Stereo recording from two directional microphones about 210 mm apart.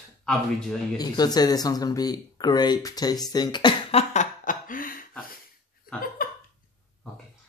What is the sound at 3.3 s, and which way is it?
Cough, 20° left (ahead or behind).